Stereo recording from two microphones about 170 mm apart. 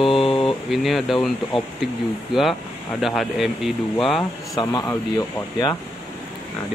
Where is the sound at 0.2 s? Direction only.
30° left (ahead or behind).